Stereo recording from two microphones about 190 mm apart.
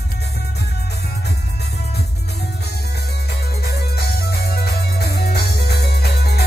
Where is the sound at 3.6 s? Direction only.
55° left (ahead or behind).